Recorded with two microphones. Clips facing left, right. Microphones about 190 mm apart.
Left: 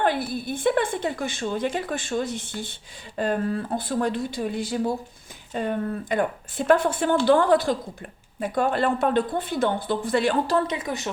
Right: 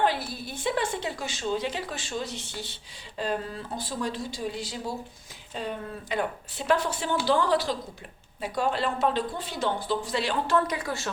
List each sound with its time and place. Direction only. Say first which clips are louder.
0.0 s a woman's voice: left 3 dB; 55° left (ahead or behind)
10.7 s speech: left 3 dB; 20° left (ahead or behind)